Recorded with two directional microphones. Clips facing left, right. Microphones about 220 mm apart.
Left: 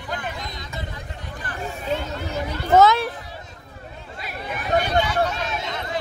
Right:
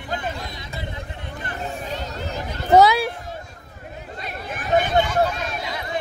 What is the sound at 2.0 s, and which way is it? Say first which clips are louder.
Chatter: left 2 dB; 40° right (ahead or behind).